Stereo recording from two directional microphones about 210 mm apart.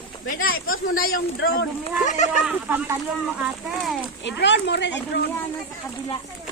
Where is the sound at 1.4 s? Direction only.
55° left (ahead or behind).